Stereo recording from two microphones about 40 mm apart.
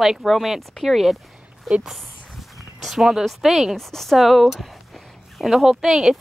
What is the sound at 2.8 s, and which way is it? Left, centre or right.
Speech, centre.